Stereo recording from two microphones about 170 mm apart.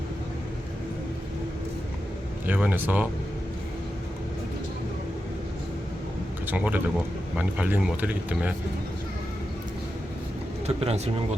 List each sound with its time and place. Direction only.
2.5 s speech: 10° right (ahead or behind)
6.5 s speech: 10° right (ahead or behind)
10.8 s speech: 40° right (ahead or behind)